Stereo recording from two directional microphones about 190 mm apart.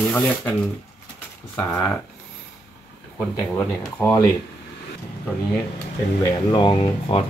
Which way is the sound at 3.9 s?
10° left (ahead or behind).